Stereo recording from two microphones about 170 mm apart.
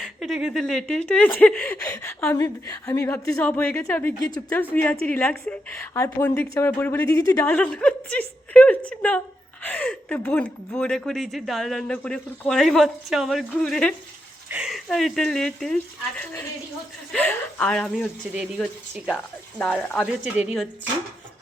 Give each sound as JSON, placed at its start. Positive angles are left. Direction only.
{"t": 0.0, "sound": "a woman's voice", "side_deg": 0}
{"t": 7.5, "sound": "a woman's voice", "side_deg": 5}
{"t": 19.5, "sound": "a woman's voice", "side_deg": 5}
{"t": 20.1, "sound": "speech", "side_deg": -10}